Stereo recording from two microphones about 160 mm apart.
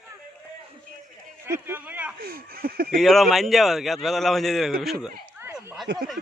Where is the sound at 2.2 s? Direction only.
70° right (ahead or behind).